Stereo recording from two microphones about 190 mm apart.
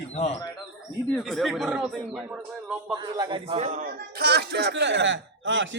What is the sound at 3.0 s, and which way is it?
Speech, 20° right (ahead or behind).